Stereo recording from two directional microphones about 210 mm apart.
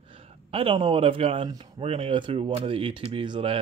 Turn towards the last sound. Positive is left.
turn(degrees=-25)  # may be behind; listen again after turning